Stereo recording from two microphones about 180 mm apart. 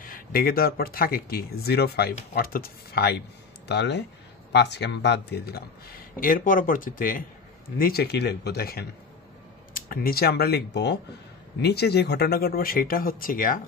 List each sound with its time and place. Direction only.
0.0 s a man's voice: 55° left (ahead or behind)
3.6 s a man's voice: 70° left (ahead or behind); by 13.6 s 50° left (ahead or behind)